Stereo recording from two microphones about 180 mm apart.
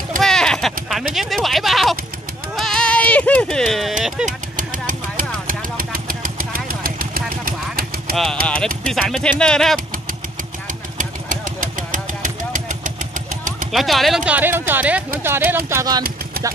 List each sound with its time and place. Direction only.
0.2 s a sound: 5° left (ahead or behind)
1.1 s speech: centre (ahead or behind)
2.5 s a sound: 5° left (ahead or behind)
4.3 s vehicle: 45° right (ahead or behind)
8.5 s speech: 5° left (ahead or behind)
11.0 s vehicle: 45° right (ahead or behind)
13.7 s speech: centre (ahead or behind); by 16.0 s 15° right (ahead or behind)